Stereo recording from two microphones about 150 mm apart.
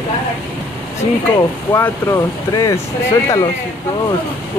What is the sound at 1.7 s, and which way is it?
Speech, 15° left (ahead or behind).